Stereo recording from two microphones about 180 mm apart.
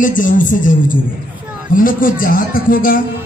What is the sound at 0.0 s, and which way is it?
A man's voice, 45° left (ahead or behind).